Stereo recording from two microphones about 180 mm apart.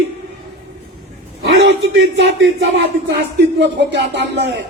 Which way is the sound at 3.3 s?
70° right (ahead or behind).